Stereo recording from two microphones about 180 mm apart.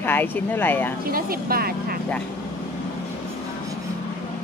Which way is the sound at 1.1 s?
55° right (ahead or behind).